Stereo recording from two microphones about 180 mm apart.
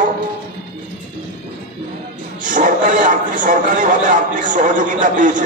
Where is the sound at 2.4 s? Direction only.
45° right (ahead or behind).